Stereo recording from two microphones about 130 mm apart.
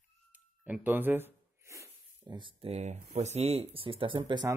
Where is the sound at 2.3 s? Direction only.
40° right (ahead or behind).